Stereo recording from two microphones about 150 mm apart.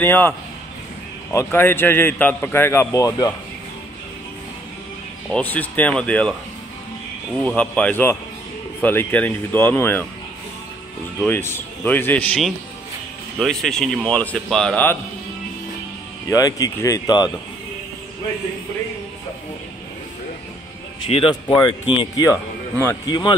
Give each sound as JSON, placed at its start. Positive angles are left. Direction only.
{"t": 0.0, "sound": "a man's voice", "side_deg": 15}
{"t": 1.3, "sound": "a man's voice", "side_deg": 15}
{"t": 5.3, "sound": "a man's voice", "side_deg": 10}
{"t": 7.3, "sound": "a man's voice", "side_deg": 10}
{"t": 11.1, "sound": "a man's voice", "side_deg": 15}
{"t": 13.4, "sound": "a man's voice", "side_deg": 5}
{"t": 16.3, "sound": "speech", "side_deg": 25}
{"t": 21.1, "sound": "speech", "side_deg": 35}